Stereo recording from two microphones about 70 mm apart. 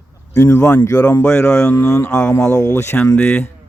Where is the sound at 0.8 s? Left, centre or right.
Left.